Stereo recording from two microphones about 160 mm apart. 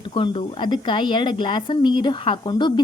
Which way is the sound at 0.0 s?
30° left (ahead or behind).